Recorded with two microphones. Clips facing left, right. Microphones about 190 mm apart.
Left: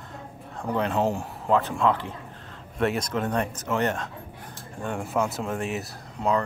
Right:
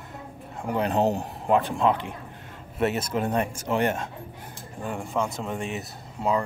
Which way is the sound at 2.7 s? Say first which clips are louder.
Even; 5° right (ahead or behind).